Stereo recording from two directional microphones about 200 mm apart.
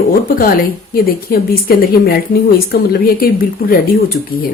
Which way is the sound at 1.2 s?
50° left (ahead or behind).